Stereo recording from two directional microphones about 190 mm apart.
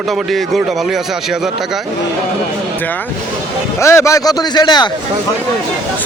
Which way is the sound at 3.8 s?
15° left (ahead or behind).